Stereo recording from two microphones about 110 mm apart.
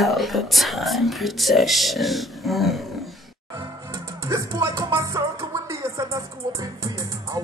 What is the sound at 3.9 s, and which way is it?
Music, 30° right (ahead or behind).